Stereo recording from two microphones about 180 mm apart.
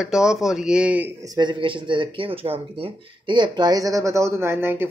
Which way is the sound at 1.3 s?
25° right (ahead or behind).